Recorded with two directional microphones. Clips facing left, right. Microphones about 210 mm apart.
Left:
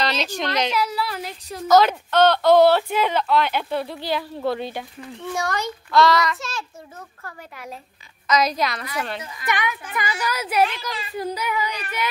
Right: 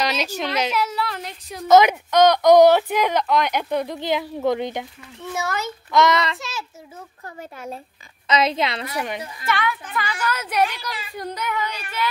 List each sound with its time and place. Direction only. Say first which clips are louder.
0.0 s speech: even; 10° right (ahead or behind)
0.9 s speech: even; 5° left (ahead or behind)
1.7 s speech: right 2 dB; 15° right (ahead or behind)
5.3 s a child's voice: left 1 dB; 5° right (ahead or behind)
5.9 s child singing: left 1 dB; 20° right (ahead or behind)
8.9 s speech: right 1 dB; 15° right (ahead or behind)
9.5 s a woman's voice: right 1 dB; 15° left (ahead or behind)